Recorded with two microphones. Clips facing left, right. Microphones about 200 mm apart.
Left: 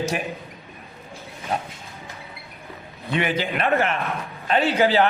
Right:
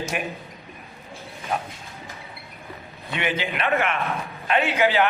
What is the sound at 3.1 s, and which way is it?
A man's voice, 40° left (ahead or behind).